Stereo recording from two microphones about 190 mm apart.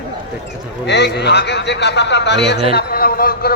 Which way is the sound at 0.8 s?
60° left (ahead or behind).